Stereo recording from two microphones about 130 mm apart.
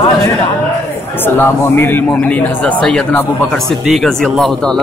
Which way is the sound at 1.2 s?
15° left (ahead or behind).